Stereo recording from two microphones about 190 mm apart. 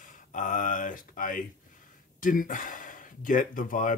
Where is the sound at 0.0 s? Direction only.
40° left (ahead or behind).